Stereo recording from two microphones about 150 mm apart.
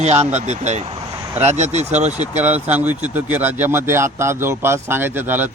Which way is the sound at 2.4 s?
10° right (ahead or behind).